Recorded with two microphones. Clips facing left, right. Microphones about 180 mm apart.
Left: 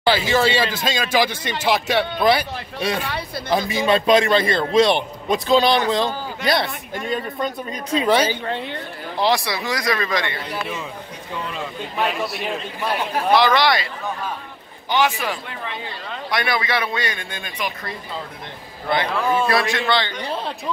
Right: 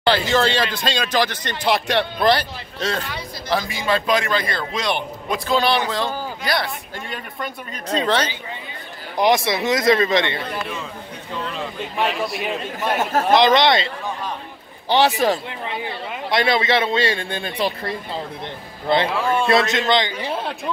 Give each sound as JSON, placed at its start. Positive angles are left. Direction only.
{"t": 0.0, "sound": "a man's voice", "side_deg": 5}
{"t": 3.5, "sound": "a man's voice", "side_deg": 20}
{"t": 8.0, "sound": "a man's voice", "side_deg": 10}
{"t": 8.5, "sound": "a woman's voice", "side_deg": 70}
{"t": 9.2, "sound": "a man's voice", "side_deg": -20}
{"t": 11.5, "sound": "a man's voice", "side_deg": 0}
{"t": 12.9, "sound": "speech", "side_deg": -45}
{"t": 13.3, "sound": "a man's voice", "side_deg": -20}
{"t": 14.9, "sound": "a man's voice", "side_deg": -35}
{"t": 15.6, "sound": "a man's voice", "side_deg": -20}
{"t": 19.0, "sound": "a man's voice", "side_deg": 0}
{"t": 19.4, "sound": "a man's voice", "side_deg": -20}
{"t": 20.1, "sound": "a man's voice", "side_deg": -5}